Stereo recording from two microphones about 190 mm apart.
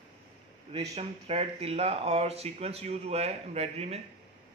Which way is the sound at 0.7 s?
30° right (ahead or behind).